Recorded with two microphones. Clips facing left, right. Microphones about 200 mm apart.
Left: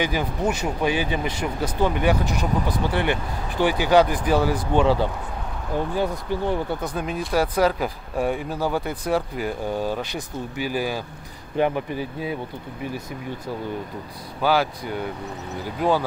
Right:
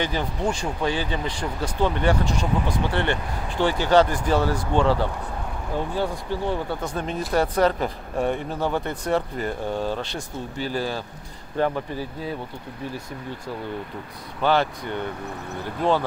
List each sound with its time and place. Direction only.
0.0 s speech: 10° left (ahead or behind)
5.9 s speech: 15° left (ahead or behind)
6.9 s speech: 5° left (ahead or behind)
14.4 s speech: 5° left (ahead or behind)